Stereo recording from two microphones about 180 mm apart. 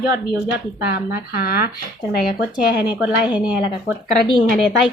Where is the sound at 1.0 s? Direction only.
55° left (ahead or behind).